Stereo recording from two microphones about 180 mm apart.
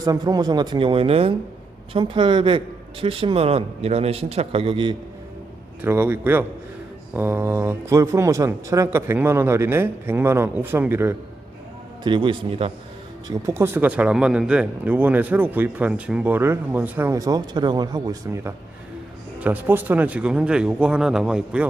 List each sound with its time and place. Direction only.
0.0 s speech: 20° right (ahead or behind)
5.8 s speech: 10° right (ahead or behind)
12.0 s speech: 25° right (ahead or behind)
13.2 s speech: 20° right (ahead or behind)
19.4 s a man's voice: 10° right (ahead or behind)